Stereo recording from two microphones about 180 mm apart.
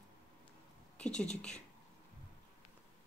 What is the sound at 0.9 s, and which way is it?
Speech, 5° left (ahead or behind).